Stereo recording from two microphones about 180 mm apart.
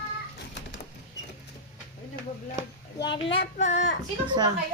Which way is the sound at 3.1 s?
30° left (ahead or behind).